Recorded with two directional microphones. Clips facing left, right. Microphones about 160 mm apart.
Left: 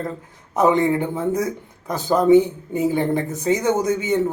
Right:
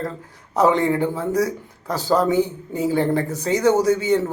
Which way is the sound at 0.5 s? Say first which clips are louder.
Even; 20° left (ahead or behind).